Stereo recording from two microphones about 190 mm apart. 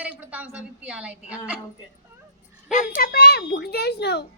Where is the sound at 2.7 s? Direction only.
45° left (ahead or behind).